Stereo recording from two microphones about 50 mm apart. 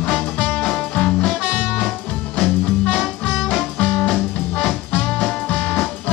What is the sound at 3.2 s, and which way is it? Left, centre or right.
Music, left.